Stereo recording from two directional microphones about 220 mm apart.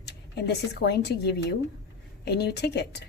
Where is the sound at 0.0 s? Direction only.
50° left (ahead or behind).